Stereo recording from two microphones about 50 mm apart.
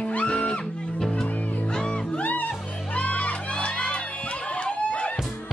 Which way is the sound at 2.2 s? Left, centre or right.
Left.